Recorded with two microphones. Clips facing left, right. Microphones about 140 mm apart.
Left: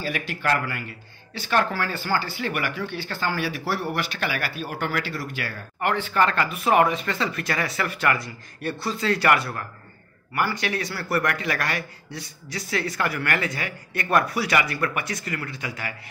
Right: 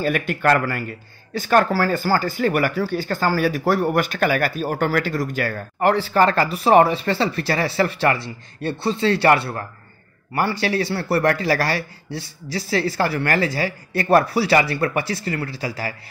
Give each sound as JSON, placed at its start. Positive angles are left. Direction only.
{"t": 0.0, "sound": "speech", "side_deg": -55}